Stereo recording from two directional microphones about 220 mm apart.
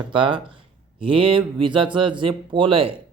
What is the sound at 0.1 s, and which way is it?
Speech, 25° right (ahead or behind).